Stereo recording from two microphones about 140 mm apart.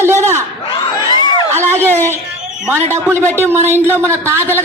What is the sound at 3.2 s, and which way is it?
Speech, 15° left (ahead or behind).